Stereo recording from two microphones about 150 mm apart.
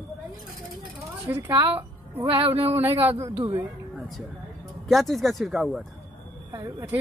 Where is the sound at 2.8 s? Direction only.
15° right (ahead or behind).